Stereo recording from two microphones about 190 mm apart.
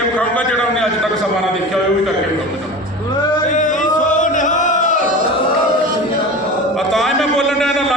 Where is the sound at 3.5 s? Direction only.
40° left (ahead or behind).